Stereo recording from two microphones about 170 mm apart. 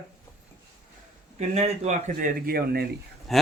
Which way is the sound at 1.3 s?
40° right (ahead or behind).